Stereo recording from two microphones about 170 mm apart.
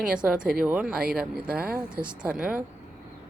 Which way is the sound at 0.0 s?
5° right (ahead or behind).